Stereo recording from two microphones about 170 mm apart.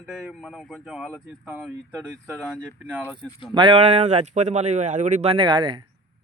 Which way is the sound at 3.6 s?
35° right (ahead or behind).